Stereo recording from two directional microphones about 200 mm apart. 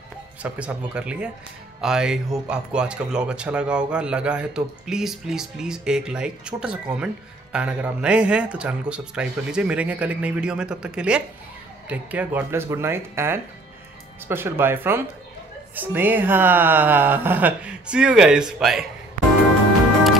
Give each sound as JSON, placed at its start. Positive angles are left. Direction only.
{"t": 0.4, "sound": "a man's voice", "side_deg": -5}